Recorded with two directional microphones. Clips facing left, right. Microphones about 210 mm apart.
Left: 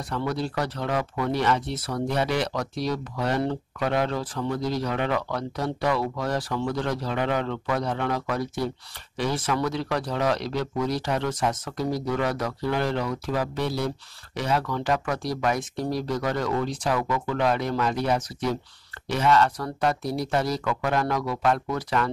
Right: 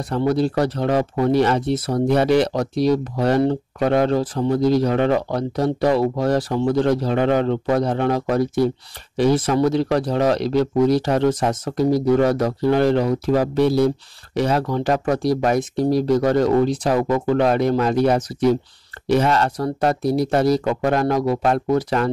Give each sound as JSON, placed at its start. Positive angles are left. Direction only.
{"t": 0.3, "sound": "speech", "side_deg": -45}
{"t": 9.5, "sound": "speech", "side_deg": -40}
{"t": 19.1, "sound": "speech", "side_deg": -40}
{"t": 20.4, "sound": "speech", "side_deg": -20}
{"t": 20.8, "sound": "speech", "side_deg": -40}